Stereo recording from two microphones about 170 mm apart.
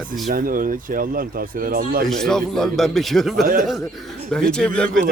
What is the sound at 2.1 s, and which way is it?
Speech, 5° left (ahead or behind).